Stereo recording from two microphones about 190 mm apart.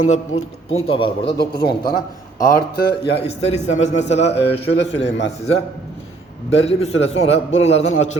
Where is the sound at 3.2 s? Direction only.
35° left (ahead or behind).